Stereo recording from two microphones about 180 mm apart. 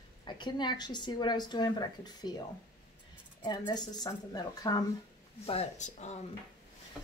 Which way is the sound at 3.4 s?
25° left (ahead or behind).